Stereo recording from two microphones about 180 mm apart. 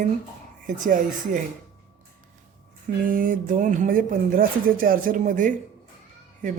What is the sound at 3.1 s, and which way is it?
Speech, 50° right (ahead or behind).